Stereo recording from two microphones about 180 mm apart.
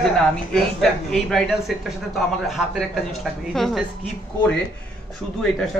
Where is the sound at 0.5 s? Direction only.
Centre (ahead or behind).